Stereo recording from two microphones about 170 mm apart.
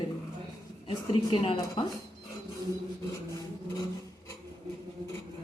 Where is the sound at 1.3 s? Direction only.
30° left (ahead or behind).